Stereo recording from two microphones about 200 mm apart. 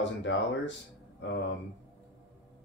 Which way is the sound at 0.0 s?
65° left (ahead or behind).